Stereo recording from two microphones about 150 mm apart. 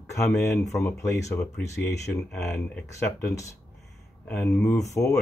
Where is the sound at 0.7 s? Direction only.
20° left (ahead or behind).